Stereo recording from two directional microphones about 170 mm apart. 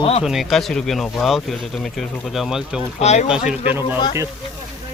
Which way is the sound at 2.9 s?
40° left (ahead or behind).